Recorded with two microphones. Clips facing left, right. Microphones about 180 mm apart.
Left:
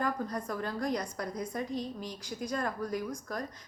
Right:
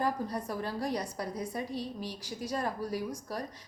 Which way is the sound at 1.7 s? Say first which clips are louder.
Even; 15° left (ahead or behind).